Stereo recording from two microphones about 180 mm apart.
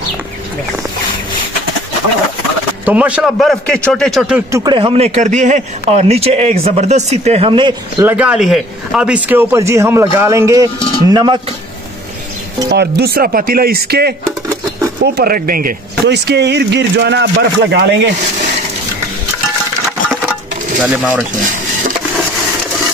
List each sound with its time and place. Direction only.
2.8 s a man's voice: 10° right (ahead or behind)
4.5 s speech: 15° right (ahead or behind)
4.7 s a man's voice: 30° right (ahead or behind)
8.0 s speech: 10° right (ahead or behind)
12.6 s speech: 65° right (ahead or behind)
15.1 s speech: 55° right (ahead or behind); by 18.1 s 70° right (ahead or behind)
20.8 s speech: 5° right (ahead or behind)